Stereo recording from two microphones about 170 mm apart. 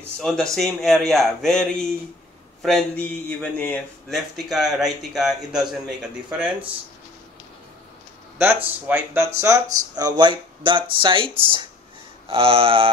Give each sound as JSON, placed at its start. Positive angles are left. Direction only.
{"t": 0.2, "sound": "a man's voice", "side_deg": 0}
{"t": 8.8, "sound": "speech", "side_deg": -15}